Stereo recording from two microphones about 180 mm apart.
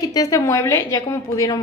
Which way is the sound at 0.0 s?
20° left (ahead or behind).